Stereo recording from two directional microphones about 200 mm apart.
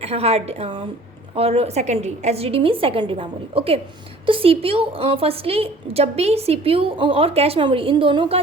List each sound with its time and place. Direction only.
0.0 s a woman's voice: 30° right (ahead or behind)